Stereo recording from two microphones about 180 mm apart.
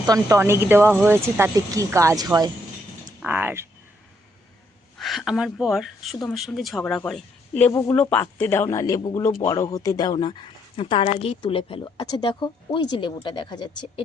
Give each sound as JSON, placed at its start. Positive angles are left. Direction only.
{"t": 0.1, "sound": "speech", "side_deg": -15}
{"t": 3.2, "sound": "mechanisms", "side_deg": -10}
{"t": 4.9, "sound": "speech", "side_deg": 0}